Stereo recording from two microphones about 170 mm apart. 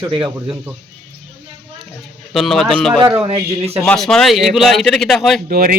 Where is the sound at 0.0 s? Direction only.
25° right (ahead or behind).